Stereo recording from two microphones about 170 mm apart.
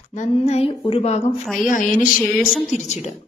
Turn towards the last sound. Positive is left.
turn(degrees=45)  # may be behind; listen again after turning